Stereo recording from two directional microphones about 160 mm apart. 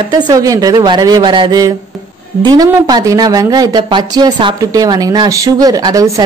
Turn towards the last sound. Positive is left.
turn(degrees=-20)  # may be behind; listen again after turning